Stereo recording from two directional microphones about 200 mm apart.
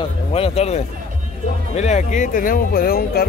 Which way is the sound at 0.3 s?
30° left (ahead or behind).